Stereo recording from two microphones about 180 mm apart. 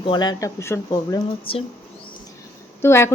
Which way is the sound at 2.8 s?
15° left (ahead or behind).